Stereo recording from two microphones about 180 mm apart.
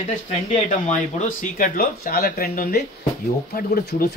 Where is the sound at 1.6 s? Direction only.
55° left (ahead or behind).